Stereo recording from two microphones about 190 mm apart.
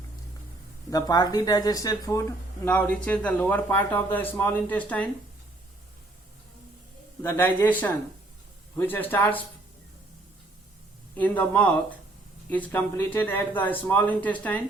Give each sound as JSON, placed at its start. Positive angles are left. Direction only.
{"t": 0.9, "sound": "speech", "side_deg": 20}
{"t": 7.2, "sound": "speech", "side_deg": 15}
{"t": 11.1, "sound": "speech", "side_deg": 10}